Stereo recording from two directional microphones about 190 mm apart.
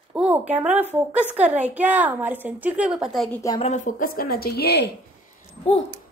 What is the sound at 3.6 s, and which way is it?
A woman's voice, 40° left (ahead or behind).